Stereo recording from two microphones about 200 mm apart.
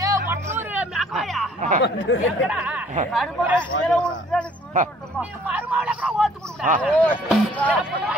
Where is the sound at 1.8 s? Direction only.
60° left (ahead or behind).